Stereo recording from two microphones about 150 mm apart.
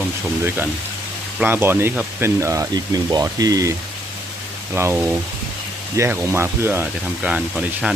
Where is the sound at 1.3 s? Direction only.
15° right (ahead or behind).